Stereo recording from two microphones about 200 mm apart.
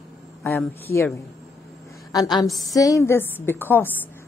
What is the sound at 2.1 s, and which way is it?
A woman's voice, 20° left (ahead or behind).